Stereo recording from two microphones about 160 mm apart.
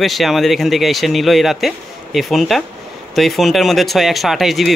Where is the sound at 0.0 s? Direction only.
Centre (ahead or behind).